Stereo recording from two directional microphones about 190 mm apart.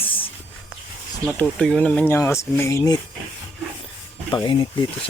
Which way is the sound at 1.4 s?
5° left (ahead or behind).